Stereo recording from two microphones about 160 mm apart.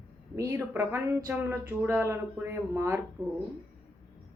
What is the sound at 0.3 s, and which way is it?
Speech, 20° right (ahead or behind).